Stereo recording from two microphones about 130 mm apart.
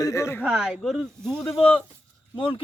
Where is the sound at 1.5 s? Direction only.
45° left (ahead or behind).